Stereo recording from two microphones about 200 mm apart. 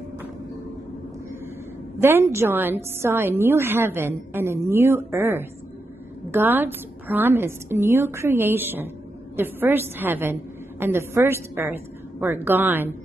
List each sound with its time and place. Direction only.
2.0 s a woman's voice: 15° right (ahead or behind)